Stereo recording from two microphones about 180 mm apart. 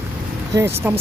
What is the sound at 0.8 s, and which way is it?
Speech, 10° right (ahead or behind).